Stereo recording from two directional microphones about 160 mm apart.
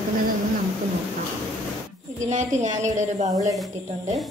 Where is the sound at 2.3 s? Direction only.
50° right (ahead or behind).